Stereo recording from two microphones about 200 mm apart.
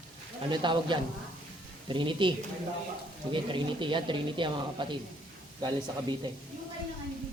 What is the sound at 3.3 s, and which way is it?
Speech, 25° right (ahead or behind).